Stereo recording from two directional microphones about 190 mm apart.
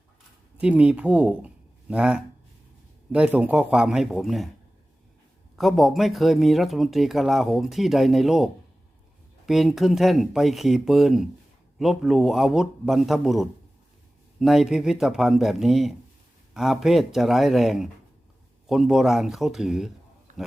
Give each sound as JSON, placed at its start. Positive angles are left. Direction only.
{"t": 0.6, "sound": "speech", "side_deg": -5}
{"t": 5.5, "sound": "speech", "side_deg": 0}
{"t": 9.5, "sound": "speech", "side_deg": 0}
{"t": 20.3, "sound": "wild animals", "side_deg": -40}